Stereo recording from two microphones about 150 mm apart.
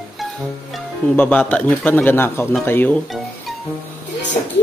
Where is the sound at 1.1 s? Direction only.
10° left (ahead or behind).